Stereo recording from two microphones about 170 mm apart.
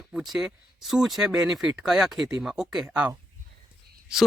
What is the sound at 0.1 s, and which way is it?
Speech, centre (ahead or behind).